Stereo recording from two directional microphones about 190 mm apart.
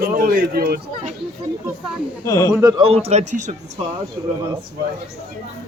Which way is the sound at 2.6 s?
30° right (ahead or behind).